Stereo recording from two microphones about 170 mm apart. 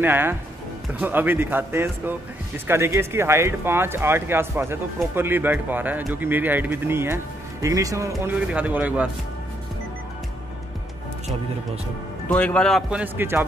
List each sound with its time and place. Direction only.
0.0 s speech: 10° right (ahead or behind)
12.3 s a man's voice: 5° left (ahead or behind)
13.0 s speech: 10° right (ahead or behind)